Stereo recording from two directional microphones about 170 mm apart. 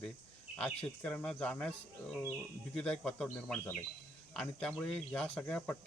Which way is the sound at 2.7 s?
5° left (ahead or behind).